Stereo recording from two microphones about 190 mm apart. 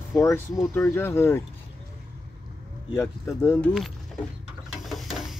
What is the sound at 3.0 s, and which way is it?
Speech, 15° left (ahead or behind).